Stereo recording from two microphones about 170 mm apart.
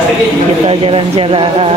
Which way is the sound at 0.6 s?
30° right (ahead or behind).